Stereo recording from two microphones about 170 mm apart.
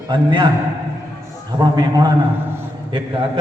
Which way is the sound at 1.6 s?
25° right (ahead or behind).